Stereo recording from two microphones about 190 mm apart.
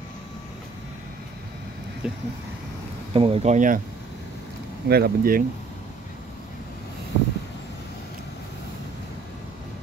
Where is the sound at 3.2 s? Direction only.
30° right (ahead or behind).